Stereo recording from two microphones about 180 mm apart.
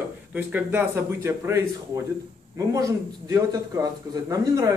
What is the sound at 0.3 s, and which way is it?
A man's voice, 10° right (ahead or behind).